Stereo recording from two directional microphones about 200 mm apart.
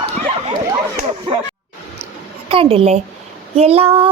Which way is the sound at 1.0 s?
30° right (ahead or behind).